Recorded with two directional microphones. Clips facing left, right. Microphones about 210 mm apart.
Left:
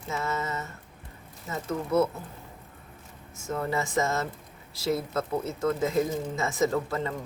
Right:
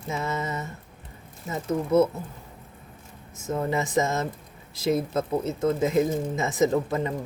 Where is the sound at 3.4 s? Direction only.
20° right (ahead or behind).